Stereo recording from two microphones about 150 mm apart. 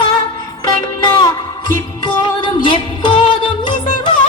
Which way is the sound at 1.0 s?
25° left (ahead or behind).